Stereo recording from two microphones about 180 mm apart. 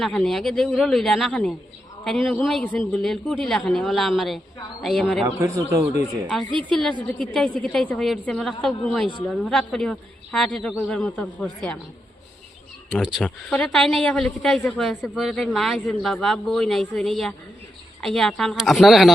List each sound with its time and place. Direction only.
0.0 s a man's voice: centre (ahead or behind)
5.2 s a man's voice: 15° right (ahead or behind)
7.3 s a man's voice: centre (ahead or behind)
12.9 s a man's voice: 5° right (ahead or behind)